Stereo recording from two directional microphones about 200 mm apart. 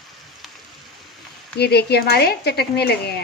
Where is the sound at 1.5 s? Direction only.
55° left (ahead or behind).